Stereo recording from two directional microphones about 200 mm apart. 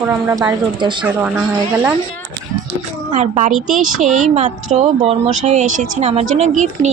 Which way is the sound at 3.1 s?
35° right (ahead or behind).